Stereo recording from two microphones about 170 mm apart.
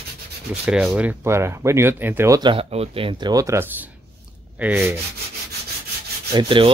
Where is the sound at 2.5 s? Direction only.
35° right (ahead or behind); by 5.0 s 15° right (ahead or behind).